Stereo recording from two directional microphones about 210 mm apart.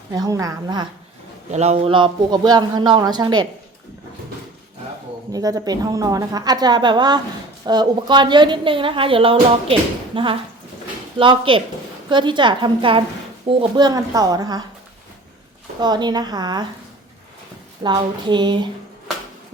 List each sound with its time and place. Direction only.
0.1 s a woman's voice: 15° right (ahead or behind)
1.5 s a woman's voice: 30° right (ahead or behind)
5.3 s a woman's voice: 15° right (ahead or behind)
15.8 s a woman's voice: 20° right (ahead or behind)
17.8 s a woman's voice: 20° right (ahead or behind)